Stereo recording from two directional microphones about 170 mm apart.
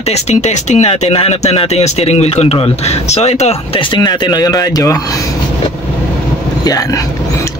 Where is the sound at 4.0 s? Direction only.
25° left (ahead or behind).